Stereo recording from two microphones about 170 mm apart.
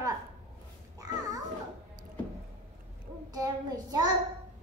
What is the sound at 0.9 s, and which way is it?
Babbling, 20° right (ahead or behind).